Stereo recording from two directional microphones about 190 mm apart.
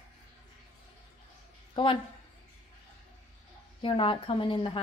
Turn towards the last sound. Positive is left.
turn(degrees=25)  # may be behind; listen again after turning